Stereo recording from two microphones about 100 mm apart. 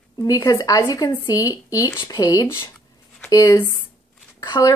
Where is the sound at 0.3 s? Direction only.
40° left (ahead or behind).